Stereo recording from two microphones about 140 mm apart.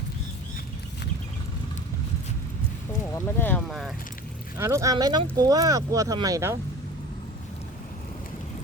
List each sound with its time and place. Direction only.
3.0 s speech: 20° left (ahead or behind)
3.7 s speech: centre (ahead or behind)
4.5 s speech: 20° right (ahead or behind)